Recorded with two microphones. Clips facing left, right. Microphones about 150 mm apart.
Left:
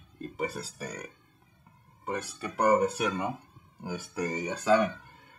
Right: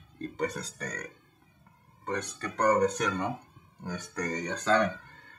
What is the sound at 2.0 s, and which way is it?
Speech, 5° left (ahead or behind).